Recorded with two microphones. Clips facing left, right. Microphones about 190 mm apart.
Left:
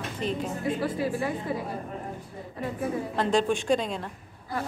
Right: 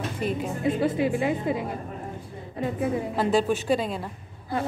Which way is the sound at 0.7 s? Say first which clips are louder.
Right 4 dB; 20° right (ahead or behind).